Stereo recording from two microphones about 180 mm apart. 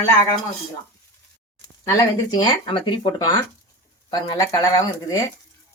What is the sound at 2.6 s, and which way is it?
Speech, 25° left (ahead or behind).